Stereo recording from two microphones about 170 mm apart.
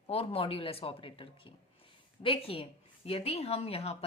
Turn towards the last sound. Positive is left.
turn(degrees=35)  # may be behind; listen again after turning